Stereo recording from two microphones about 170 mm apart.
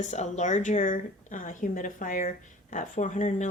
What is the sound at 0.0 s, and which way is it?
Speech, 45° left (ahead or behind).